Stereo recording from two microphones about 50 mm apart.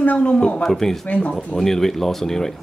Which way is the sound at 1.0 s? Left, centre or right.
Left.